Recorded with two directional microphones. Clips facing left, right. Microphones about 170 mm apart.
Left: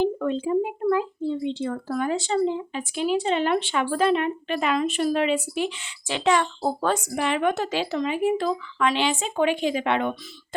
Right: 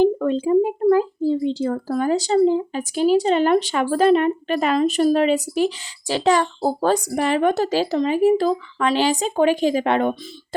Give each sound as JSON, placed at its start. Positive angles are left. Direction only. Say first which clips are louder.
{"t": 0.0, "sound": "a child's voice", "louder": "right 6 dB", "side_deg": -40}